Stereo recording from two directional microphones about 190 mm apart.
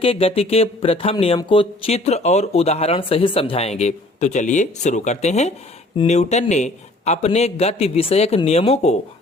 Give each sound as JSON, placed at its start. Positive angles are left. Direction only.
{"t": 0.0, "sound": "speech", "side_deg": 30}